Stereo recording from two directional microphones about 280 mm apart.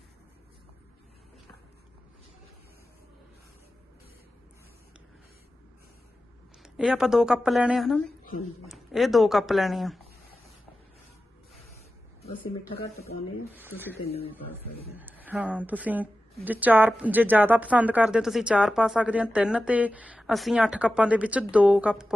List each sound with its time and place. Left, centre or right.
6.6 s speech: centre
12.2 s speech: left
13.5 s speech: centre